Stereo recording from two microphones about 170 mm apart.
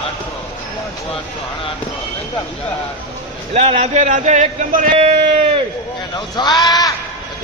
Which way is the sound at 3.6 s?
40° right (ahead or behind).